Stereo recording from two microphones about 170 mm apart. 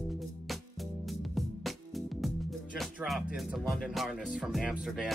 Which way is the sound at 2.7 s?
Centre (ahead or behind).